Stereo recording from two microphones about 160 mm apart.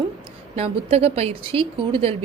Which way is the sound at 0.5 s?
40° right (ahead or behind).